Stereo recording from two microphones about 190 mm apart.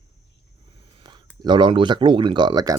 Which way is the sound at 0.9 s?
25° right (ahead or behind).